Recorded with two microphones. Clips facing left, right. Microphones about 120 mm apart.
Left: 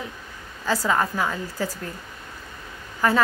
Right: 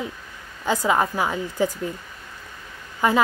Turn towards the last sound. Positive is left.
turn(degrees=-20)  # may be behind; listen again after turning